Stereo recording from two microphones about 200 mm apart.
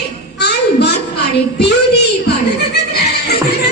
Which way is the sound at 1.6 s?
55° left (ahead or behind).